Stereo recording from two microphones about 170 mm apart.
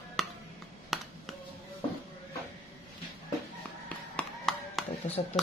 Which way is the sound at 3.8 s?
5° left (ahead or behind).